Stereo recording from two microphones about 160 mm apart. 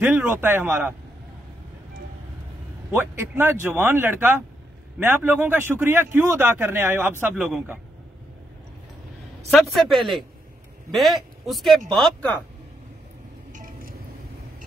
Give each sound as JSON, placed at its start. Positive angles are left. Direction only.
{"t": 0.0, "sound": "a man's voice", "side_deg": -10}
{"t": 2.9, "sound": "a man's voice", "side_deg": -15}
{"t": 9.5, "sound": "a man's voice", "side_deg": 0}
{"t": 13.5, "sound": "a sound", "side_deg": -55}